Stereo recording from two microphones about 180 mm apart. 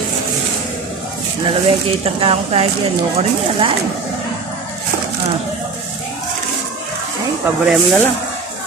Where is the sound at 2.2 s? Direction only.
35° right (ahead or behind).